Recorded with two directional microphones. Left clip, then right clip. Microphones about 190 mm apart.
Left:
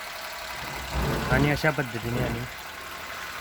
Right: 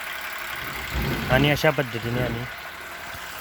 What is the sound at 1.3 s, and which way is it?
Speech, 20° right (ahead or behind).